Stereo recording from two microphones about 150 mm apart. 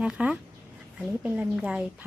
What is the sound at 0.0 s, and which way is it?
A woman's voice, 5° right (ahead or behind).